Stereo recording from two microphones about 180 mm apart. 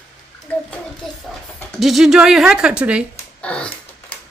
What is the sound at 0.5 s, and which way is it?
Bathtub, 5° left (ahead or behind).